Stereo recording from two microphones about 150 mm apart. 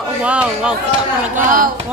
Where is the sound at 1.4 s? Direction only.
65° right (ahead or behind).